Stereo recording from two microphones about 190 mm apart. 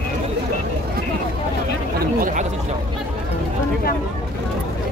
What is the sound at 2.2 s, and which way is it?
Speech, 45° right (ahead or behind).